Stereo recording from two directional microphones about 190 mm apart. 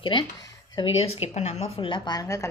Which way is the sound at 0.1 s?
25° left (ahead or behind).